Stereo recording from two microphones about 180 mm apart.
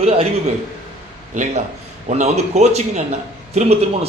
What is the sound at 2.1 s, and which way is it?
A man's voice, 40° right (ahead or behind).